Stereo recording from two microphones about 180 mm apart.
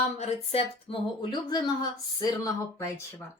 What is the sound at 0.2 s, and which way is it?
Speech, 30° left (ahead or behind).